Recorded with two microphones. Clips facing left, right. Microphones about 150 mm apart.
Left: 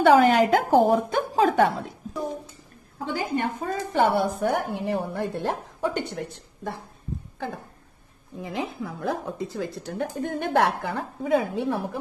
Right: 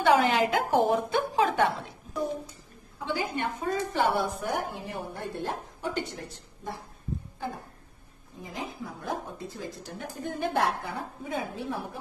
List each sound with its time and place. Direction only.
0.1 s a woman's voice: 40° left (ahead or behind)
3.3 s a woman's voice: 40° left (ahead or behind)
4.1 s speech: 60° left (ahead or behind)
4.8 s a woman's voice: 75° left (ahead or behind)
8.4 s a woman's voice: 75° left (ahead or behind)